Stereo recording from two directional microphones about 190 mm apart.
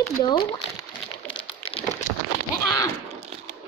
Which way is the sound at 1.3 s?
25° left (ahead or behind).